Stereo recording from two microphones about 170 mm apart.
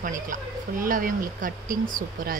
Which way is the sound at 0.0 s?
55° right (ahead or behind).